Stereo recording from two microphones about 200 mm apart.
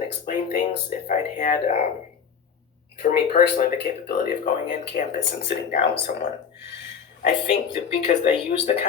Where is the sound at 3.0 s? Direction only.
45° left (ahead or behind).